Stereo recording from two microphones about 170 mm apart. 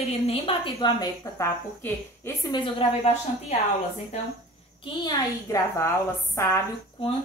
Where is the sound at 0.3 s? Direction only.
35° left (ahead or behind).